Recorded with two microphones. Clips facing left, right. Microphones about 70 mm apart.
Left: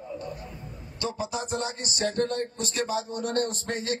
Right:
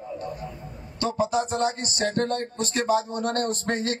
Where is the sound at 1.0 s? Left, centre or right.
Right.